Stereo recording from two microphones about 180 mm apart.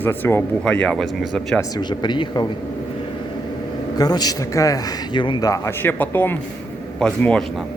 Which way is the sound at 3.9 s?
20° left (ahead or behind).